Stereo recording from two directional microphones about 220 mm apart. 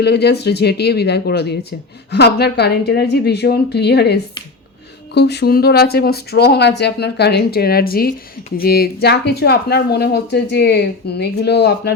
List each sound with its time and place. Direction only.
0.0 s speech: 50° left (ahead or behind)